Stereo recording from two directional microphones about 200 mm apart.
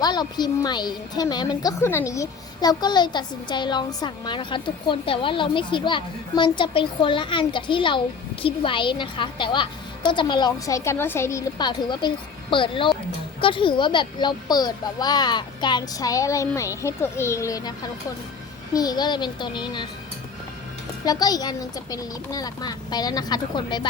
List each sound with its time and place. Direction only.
0.0 s a woman's voice: 20° left (ahead or behind)
21.0 s a woman's voice: 20° left (ahead or behind)